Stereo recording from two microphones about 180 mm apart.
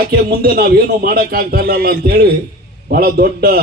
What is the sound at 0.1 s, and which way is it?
A man's voice, 55° right (ahead or behind).